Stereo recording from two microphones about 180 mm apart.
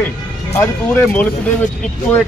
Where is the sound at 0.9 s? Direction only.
10° left (ahead or behind).